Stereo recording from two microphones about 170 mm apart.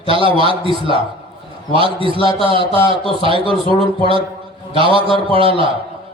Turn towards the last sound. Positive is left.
turn(degrees=-30)  # may be behind; listen again after turning